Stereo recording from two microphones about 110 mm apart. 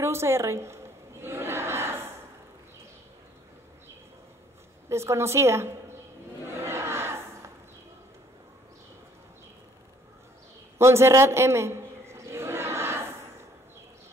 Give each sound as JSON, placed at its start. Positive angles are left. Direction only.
{"t": 0.0, "sound": "a woman's voice", "side_deg": -25}
{"t": 1.2, "sound": "battle cry", "side_deg": -20}
{"t": 4.8, "sound": "a woman's voice", "side_deg": -25}
{"t": 6.6, "sound": "crowd", "side_deg": -25}
{"t": 10.8, "sound": "a sound", "side_deg": -25}